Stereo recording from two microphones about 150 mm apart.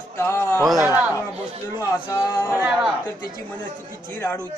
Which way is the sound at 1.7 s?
20° left (ahead or behind).